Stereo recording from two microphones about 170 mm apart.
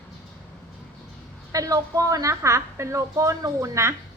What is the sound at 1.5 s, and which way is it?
A woman's voice, 20° right (ahead or behind).